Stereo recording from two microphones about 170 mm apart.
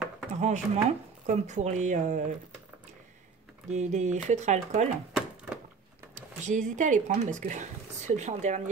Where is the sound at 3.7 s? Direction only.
45° right (ahead or behind).